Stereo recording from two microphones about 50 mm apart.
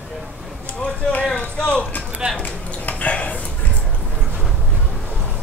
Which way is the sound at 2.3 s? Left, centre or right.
Left.